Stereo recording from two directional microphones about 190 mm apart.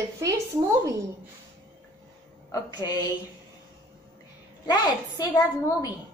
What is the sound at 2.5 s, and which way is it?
Speech, 20° left (ahead or behind).